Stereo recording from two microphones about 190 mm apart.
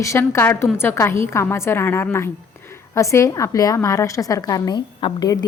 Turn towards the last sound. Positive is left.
turn(degrees=20)  # may be behind; listen again after turning